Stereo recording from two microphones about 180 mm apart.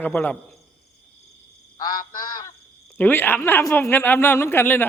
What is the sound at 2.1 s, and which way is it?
Honk, 25° left (ahead or behind).